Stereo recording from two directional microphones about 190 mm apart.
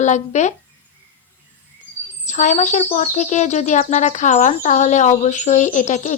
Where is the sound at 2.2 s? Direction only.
40° left (ahead or behind).